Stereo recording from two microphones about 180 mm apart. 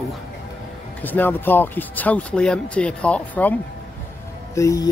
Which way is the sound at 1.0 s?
10° left (ahead or behind).